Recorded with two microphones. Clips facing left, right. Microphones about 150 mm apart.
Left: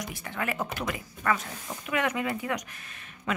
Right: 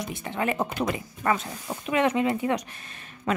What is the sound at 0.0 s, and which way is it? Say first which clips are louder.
A woman's voice: right 5 dB; 25° right (ahead or behind).